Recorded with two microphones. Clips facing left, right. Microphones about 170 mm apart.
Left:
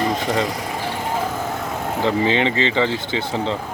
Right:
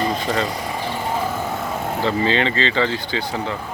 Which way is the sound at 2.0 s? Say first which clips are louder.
Left 2 dB; 15° left (ahead or behind).